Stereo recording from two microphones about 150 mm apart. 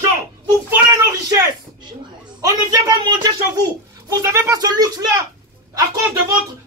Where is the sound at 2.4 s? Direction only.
25° right (ahead or behind).